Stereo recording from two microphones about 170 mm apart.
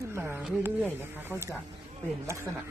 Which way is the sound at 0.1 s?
15° right (ahead or behind).